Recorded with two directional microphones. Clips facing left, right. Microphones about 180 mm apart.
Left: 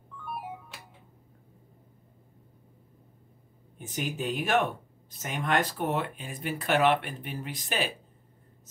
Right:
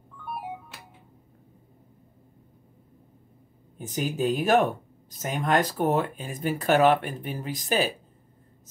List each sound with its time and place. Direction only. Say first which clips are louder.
3.7 s speech: right 5 dB; 40° right (ahead or behind)